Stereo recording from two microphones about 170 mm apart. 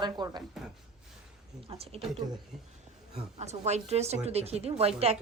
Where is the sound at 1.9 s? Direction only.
35° right (ahead or behind).